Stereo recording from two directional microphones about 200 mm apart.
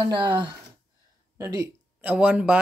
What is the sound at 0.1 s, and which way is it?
Speech, 25° right (ahead or behind).